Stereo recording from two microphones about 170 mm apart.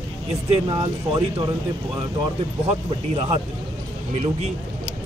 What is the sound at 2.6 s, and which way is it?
Speech, 40° right (ahead or behind).